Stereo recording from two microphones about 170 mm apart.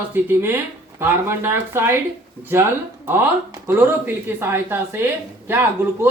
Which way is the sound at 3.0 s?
15° right (ahead or behind).